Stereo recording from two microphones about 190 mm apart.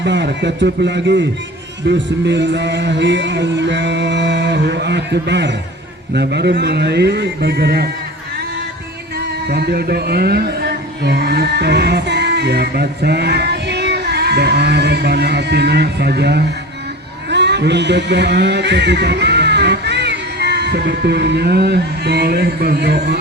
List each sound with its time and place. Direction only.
0.0 s a man's voice: 65° right (ahead or behind)
9.5 s speech: 55° right (ahead or behind)